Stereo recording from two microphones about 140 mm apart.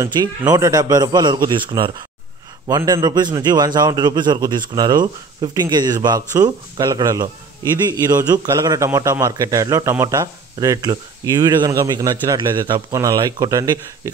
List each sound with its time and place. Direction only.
0.1 s a man's voice: 30° right (ahead or behind)